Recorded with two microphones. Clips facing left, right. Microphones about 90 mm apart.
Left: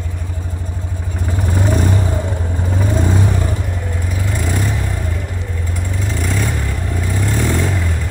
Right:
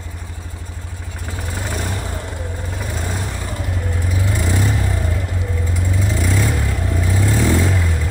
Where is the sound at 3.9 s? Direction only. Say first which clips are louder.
Right 1 dB; 5° right (ahead or behind).